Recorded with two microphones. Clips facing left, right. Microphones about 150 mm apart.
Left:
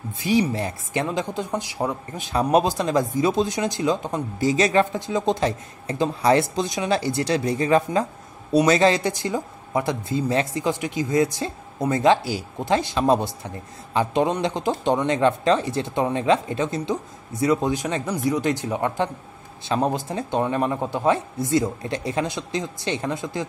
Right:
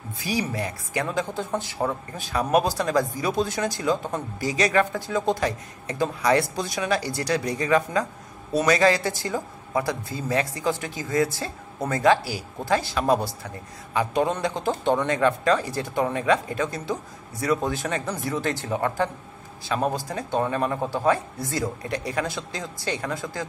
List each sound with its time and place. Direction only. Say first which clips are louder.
0.2 s speech: left 6 dB; 25° left (ahead or behind)